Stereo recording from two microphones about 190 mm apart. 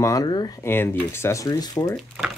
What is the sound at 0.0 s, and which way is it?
Speech, 20° left (ahead or behind).